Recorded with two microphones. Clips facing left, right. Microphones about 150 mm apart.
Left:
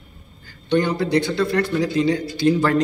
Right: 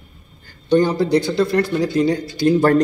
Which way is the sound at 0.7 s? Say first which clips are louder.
Right 4 dB; 35° right (ahead or behind).